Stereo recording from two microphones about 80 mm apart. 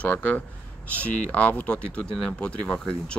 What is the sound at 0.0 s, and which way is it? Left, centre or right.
Speech, centre.